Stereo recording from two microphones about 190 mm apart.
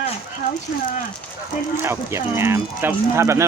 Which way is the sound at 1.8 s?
15° right (ahead or behind).